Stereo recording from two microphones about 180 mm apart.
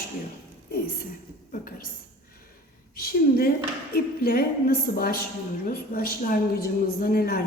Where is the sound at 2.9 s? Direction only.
55° left (ahead or behind).